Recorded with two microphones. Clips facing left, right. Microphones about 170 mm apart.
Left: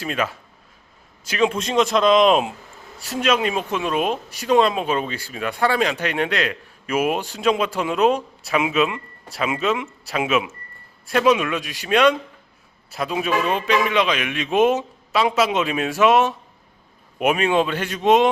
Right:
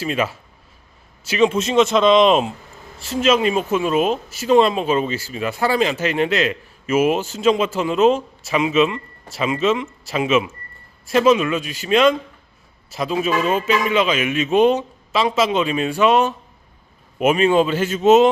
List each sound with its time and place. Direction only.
1.3 s speech: 5° right (ahead or behind)